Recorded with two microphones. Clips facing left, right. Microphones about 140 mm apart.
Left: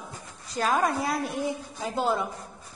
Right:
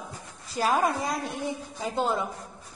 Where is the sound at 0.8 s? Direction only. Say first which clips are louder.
Left 1 dB; centre (ahead or behind).